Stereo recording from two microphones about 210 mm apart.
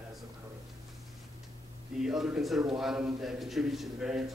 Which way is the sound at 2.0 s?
Centre (ahead or behind).